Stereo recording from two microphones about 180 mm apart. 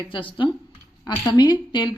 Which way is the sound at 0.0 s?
30° left (ahead or behind).